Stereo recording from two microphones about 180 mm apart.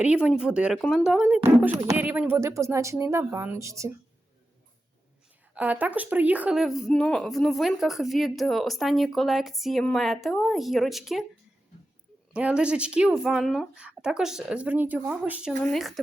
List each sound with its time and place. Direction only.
0.0 s a woman's voice: 5° right (ahead or behind)
5.5 s speech: 10° right (ahead or behind)
12.3 s speech: 5° right (ahead or behind)